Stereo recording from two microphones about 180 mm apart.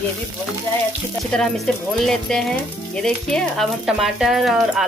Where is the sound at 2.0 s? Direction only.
5° left (ahead or behind).